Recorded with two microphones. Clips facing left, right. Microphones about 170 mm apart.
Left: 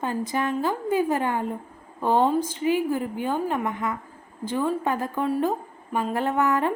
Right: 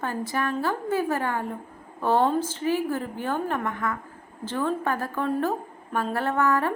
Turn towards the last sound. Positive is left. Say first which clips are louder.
# left 1 dB
turn(degrees=20)  # may be behind; listen again after turning